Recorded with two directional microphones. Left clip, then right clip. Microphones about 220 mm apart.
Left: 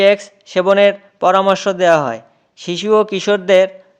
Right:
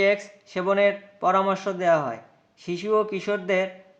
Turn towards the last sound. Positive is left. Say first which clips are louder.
# left 13 dB
turn(degrees=45)  # may be behind; listen again after turning